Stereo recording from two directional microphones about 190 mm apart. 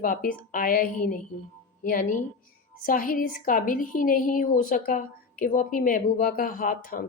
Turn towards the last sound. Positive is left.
turn(degrees=50)  # may be behind; listen again after turning